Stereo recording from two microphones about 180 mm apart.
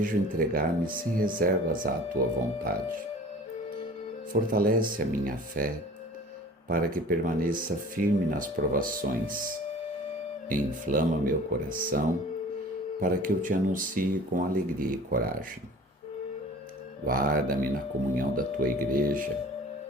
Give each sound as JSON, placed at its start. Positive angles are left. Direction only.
{"t": 0.0, "sound": "speech", "side_deg": -50}
{"t": 4.3, "sound": "speech", "side_deg": -50}
{"t": 10.5, "sound": "speech", "side_deg": -50}
{"t": 17.1, "sound": "speech", "side_deg": -50}